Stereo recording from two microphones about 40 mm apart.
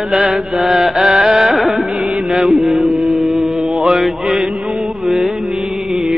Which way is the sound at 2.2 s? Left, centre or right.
Centre.